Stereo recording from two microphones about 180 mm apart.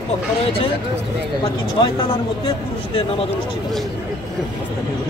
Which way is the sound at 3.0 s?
30° left (ahead or behind).